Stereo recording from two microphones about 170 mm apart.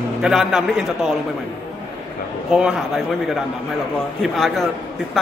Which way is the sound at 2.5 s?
5° right (ahead or behind).